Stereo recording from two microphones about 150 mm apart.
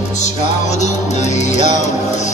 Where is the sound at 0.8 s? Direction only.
50° left (ahead or behind).